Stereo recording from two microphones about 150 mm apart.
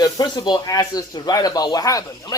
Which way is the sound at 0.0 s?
25° left (ahead or behind).